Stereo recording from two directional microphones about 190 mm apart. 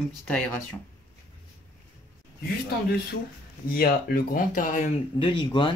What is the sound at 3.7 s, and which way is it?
Speech, 50° left (ahead or behind).